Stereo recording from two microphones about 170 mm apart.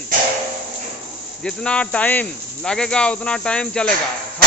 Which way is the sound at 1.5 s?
5° left (ahead or behind).